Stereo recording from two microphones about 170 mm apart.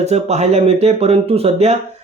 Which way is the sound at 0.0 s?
40° right (ahead or behind).